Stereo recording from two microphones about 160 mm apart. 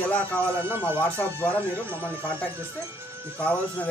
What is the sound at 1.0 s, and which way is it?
Speech, 10° left (ahead or behind).